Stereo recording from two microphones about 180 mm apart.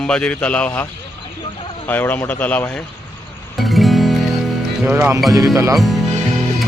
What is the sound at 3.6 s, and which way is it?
Music, centre (ahead or behind).